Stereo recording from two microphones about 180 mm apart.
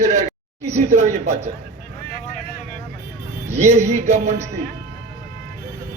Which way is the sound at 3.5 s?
40° right (ahead or behind).